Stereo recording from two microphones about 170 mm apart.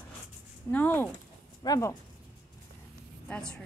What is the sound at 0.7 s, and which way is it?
Speech, 10° left (ahead or behind).